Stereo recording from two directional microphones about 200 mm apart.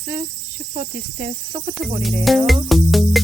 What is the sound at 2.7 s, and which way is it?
Music, centre (ahead or behind).